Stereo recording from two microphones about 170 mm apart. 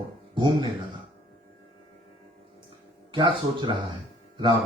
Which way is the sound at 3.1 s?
30° right (ahead or behind).